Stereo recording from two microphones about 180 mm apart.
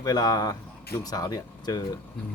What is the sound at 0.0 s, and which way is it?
Speech, 20° left (ahead or behind).